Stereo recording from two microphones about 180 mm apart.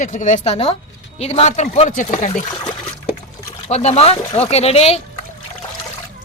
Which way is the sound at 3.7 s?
35° left (ahead or behind).